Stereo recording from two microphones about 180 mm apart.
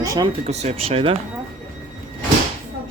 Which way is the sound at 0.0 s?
20° right (ahead or behind).